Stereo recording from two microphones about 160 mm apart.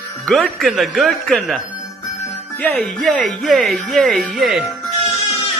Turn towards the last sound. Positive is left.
turn(degrees=40)  # may be behind; listen again after turning